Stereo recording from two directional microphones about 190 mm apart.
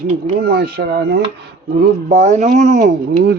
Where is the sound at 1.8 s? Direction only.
40° right (ahead or behind).